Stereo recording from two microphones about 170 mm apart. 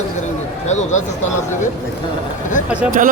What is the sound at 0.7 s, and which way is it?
Speech, 45° left (ahead or behind).